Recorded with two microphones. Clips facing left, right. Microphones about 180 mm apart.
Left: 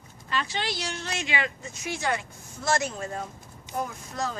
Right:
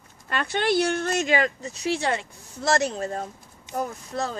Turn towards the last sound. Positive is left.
turn(degrees=-35)  # may be behind; listen again after turning